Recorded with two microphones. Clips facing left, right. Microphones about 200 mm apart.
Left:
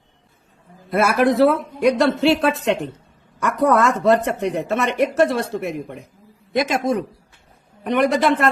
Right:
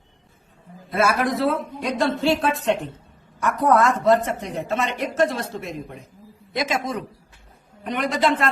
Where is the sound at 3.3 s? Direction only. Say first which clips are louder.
Left 2 dB; 70° left (ahead or behind).